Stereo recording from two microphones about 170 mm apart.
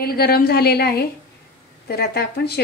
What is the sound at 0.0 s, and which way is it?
A woman's voice, 65° left (ahead or behind).